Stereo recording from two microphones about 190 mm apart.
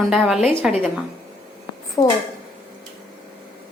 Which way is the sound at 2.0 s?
20° left (ahead or behind).